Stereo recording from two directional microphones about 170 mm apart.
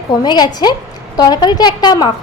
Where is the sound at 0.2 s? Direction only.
25° left (ahead or behind).